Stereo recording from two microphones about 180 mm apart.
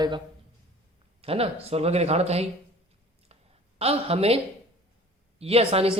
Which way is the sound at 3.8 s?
35° right (ahead or behind).